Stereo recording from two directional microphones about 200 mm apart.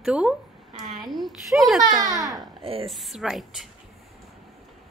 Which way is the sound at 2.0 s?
20° right (ahead or behind).